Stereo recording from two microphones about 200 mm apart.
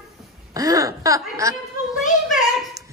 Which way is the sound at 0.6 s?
15° right (ahead or behind).